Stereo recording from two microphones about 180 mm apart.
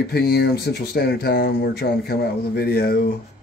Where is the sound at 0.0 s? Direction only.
60° left (ahead or behind).